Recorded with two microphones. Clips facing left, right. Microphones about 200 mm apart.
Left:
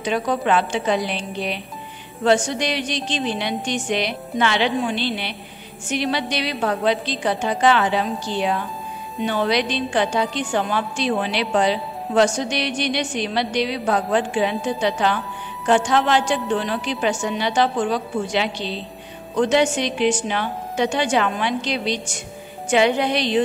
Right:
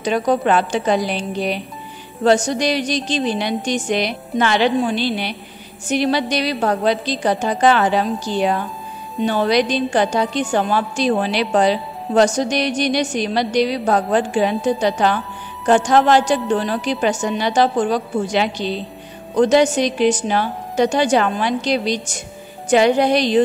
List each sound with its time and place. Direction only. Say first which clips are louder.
0.0 s a woman's voice: right 4 dB; 40° right (ahead or behind)